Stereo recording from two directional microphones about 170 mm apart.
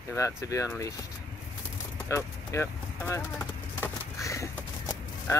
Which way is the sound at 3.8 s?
20° left (ahead or behind).